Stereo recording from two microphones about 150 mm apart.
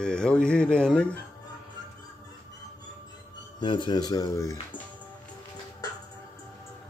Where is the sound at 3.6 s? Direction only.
30° left (ahead or behind).